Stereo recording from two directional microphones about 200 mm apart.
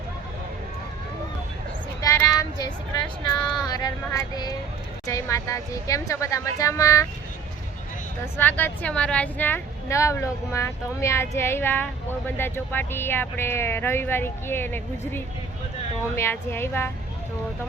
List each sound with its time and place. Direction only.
2.0 s child singing: 15° left (ahead or behind)
3.6 s a woman's voice: 20° left (ahead or behind)
8.2 s a woman's voice: 10° left (ahead or behind)